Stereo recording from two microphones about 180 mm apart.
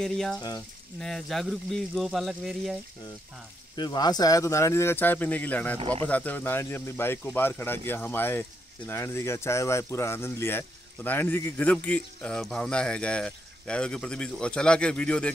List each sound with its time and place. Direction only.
0.0 s a man's voice: centre (ahead or behind)
3.7 s a man's voice: 25° left (ahead or behind); by 15.3 s 5° left (ahead or behind)